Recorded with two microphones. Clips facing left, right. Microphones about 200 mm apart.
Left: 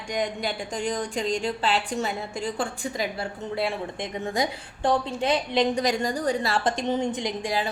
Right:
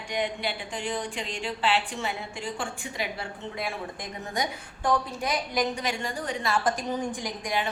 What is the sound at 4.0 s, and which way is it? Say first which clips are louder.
A woman's voice: left 5 dB; 25° left (ahead or behind).